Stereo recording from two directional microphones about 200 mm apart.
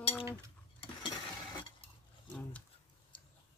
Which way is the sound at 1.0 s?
25° left (ahead or behind).